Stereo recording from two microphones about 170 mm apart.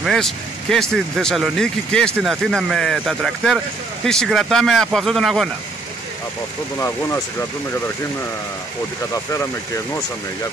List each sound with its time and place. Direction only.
0.0 s speech: centre (ahead or behind)
6.8 s speech: 15° left (ahead or behind)